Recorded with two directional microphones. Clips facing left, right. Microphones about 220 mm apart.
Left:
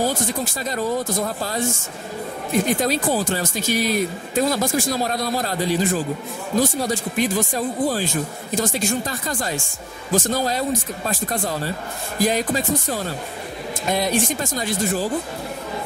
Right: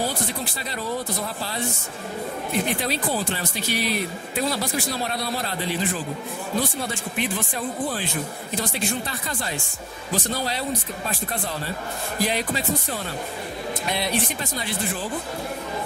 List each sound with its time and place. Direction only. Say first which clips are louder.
0.0 s speech: left 5 dB; 45° left (ahead or behind)